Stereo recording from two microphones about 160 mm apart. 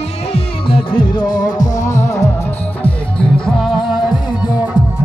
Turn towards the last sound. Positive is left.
turn(degrees=0)  # may be behind; listen again after turning